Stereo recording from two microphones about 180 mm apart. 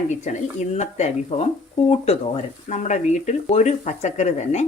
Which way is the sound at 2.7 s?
40° left (ahead or behind).